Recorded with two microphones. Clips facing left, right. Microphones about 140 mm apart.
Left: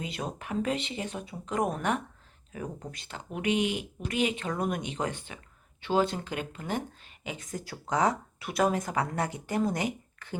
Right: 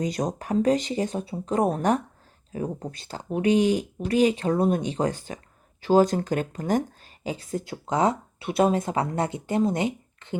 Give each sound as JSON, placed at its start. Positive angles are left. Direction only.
{"t": 0.0, "sound": "speech", "side_deg": -40}
{"t": 7.3, "sound": "speech", "side_deg": -30}